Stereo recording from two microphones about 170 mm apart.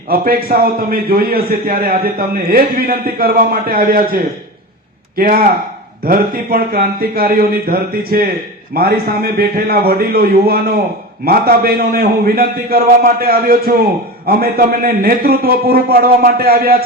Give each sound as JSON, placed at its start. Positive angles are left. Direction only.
{"t": 0.1, "sound": "a man's voice", "side_deg": -60}